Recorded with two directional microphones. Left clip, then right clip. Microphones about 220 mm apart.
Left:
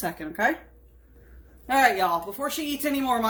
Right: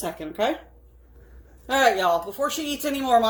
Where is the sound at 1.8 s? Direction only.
20° left (ahead or behind).